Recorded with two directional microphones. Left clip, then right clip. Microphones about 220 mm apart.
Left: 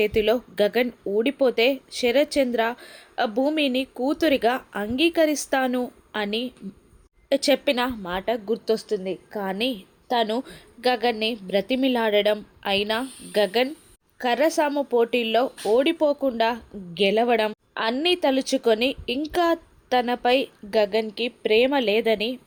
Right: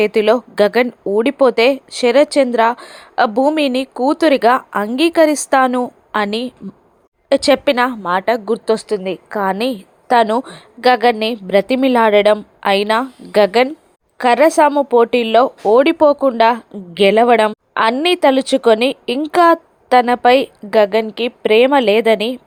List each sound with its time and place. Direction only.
0.0 s speech: 15° right (ahead or behind)